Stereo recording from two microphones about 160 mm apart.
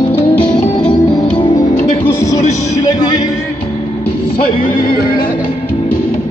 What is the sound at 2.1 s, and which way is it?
Music, 20° left (ahead or behind).